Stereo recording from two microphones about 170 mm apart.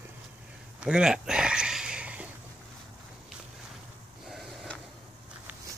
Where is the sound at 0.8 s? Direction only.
5° right (ahead or behind).